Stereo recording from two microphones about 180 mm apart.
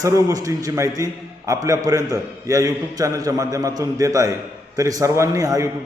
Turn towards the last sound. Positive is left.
turn(degrees=-20)  # may be behind; listen again after turning